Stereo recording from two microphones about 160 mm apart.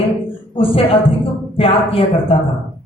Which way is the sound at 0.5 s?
35° left (ahead or behind).